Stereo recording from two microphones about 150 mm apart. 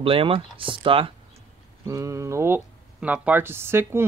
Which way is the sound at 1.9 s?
20° right (ahead or behind).